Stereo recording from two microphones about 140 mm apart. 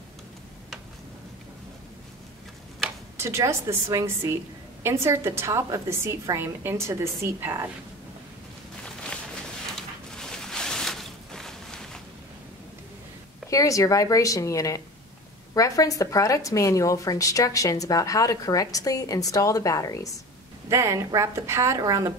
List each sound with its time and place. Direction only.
3.2 s a woman's voice: 20° right (ahead or behind)
8.8 s a sound: 5° left (ahead or behind)
13.5 s a woman's voice: 25° left (ahead or behind)
20.7 s a woman's voice: 20° right (ahead or behind)